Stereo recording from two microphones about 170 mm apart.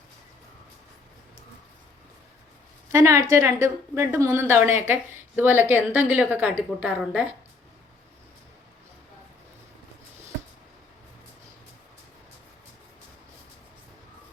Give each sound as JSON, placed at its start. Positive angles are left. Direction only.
{"t": 2.9, "sound": "a woman's voice", "side_deg": -15}